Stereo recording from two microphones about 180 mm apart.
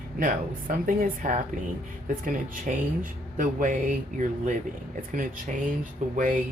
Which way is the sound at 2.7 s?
45° right (ahead or behind).